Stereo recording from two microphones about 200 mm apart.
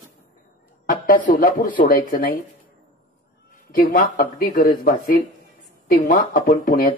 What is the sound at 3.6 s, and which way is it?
Speech, 45° left (ahead or behind).